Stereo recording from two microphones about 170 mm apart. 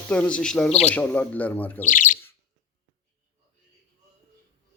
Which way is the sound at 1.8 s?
50° left (ahead or behind).